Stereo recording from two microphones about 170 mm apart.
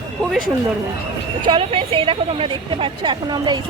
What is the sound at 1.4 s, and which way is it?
A woman's voice, 30° right (ahead or behind).